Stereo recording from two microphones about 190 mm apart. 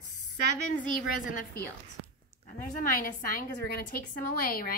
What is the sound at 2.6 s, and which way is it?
A woman's voice, 45° left (ahead or behind).